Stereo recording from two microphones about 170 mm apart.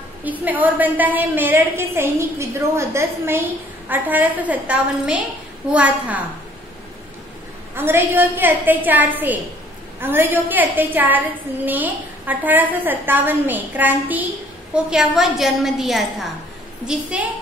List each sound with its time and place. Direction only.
0.2 s a woman's voice: 10° right (ahead or behind)
7.7 s a woman's voice: 15° right (ahead or behind)